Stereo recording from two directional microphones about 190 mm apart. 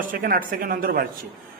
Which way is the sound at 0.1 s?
45° right (ahead or behind).